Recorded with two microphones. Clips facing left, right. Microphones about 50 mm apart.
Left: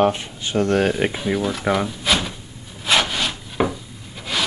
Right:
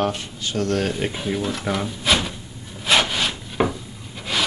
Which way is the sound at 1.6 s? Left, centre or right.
Centre.